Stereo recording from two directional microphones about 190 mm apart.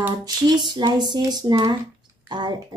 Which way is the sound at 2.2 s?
20° right (ahead or behind).